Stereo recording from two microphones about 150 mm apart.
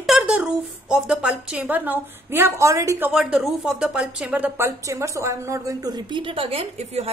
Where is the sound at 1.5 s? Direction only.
10° right (ahead or behind).